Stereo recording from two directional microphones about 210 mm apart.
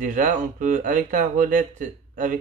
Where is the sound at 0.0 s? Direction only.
40° right (ahead or behind).